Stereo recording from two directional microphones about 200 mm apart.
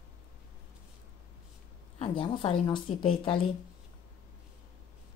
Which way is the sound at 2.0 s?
25° left (ahead or behind).